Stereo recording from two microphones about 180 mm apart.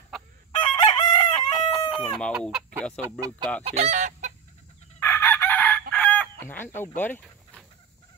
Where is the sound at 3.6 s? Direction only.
35° right (ahead or behind).